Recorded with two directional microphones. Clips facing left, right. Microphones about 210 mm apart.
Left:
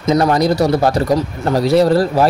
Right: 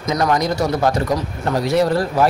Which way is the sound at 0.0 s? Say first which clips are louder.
Left 5 dB; 30° left (ahead or behind).